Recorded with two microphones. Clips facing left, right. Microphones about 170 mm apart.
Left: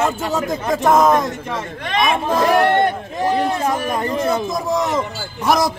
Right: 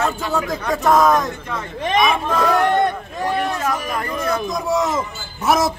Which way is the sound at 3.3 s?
25° left (ahead or behind).